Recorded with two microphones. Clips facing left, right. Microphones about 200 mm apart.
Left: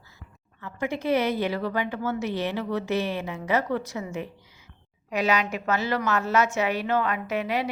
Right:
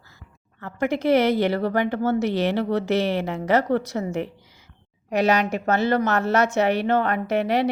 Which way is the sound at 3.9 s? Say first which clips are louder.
Right 6 dB; 50° right (ahead or behind).